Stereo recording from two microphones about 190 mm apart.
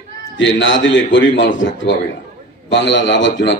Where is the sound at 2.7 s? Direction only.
70° left (ahead or behind).